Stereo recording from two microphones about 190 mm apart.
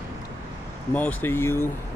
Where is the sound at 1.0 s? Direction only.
10° left (ahead or behind).